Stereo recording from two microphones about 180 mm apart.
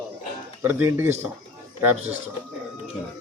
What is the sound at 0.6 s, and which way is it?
Speech, 10° right (ahead or behind).